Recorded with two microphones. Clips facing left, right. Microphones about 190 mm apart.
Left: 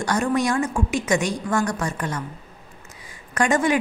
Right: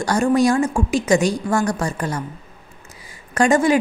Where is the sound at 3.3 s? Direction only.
30° right (ahead or behind).